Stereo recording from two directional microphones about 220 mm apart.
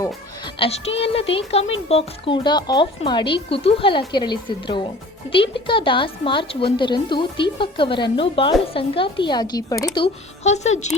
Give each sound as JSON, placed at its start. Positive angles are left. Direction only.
{"t": 0.6, "sound": "speech", "side_deg": 25}